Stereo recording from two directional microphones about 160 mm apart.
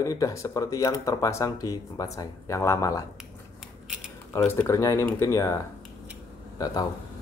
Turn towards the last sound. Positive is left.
turn(degrees=25)  # may be behind; listen again after turning